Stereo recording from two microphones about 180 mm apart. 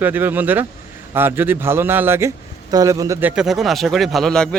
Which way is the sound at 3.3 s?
5° right (ahead or behind).